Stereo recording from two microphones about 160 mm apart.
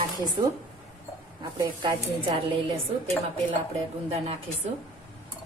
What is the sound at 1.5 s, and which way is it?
A woman's voice, 30° right (ahead or behind).